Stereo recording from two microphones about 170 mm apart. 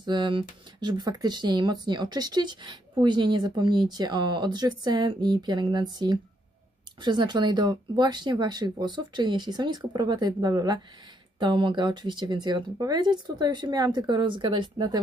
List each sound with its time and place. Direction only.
0.0 s speech: 25° right (ahead or behind)